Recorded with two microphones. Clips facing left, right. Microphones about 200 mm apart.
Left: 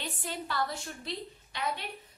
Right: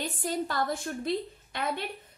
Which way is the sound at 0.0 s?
45° right (ahead or behind).